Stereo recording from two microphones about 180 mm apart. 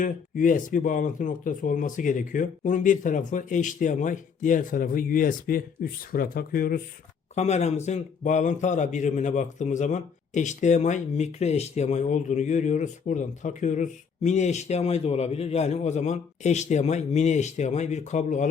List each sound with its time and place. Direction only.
0.0 s speech: 45° left (ahead or behind)
7.3 s a man's voice: 40° left (ahead or behind)